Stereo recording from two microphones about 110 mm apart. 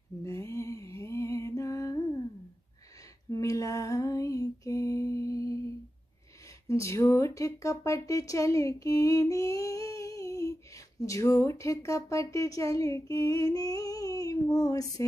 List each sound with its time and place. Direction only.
0.2 s mantra: 25° left (ahead or behind)
3.3 s lullaby: 30° left (ahead or behind)
6.7 s speech: 25° left (ahead or behind)